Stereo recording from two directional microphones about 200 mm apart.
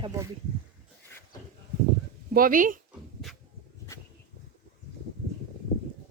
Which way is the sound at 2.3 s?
45° right (ahead or behind).